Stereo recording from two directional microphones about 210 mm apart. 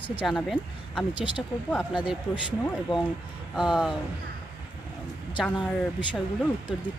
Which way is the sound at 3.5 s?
Centre (ahead or behind).